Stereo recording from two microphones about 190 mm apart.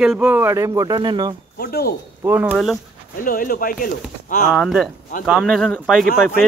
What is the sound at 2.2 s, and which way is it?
Speech, 10° right (ahead or behind).